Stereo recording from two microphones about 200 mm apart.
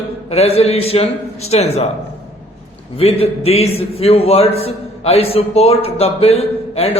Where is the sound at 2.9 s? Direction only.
30° left (ahead or behind).